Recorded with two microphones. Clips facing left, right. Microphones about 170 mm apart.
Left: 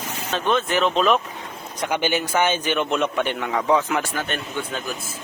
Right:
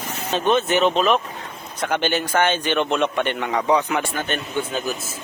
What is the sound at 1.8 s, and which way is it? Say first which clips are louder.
Speech: right 1 dB; 10° left (ahead or behind).